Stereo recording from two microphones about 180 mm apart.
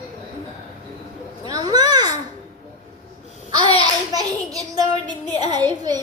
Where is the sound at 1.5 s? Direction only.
20° right (ahead or behind).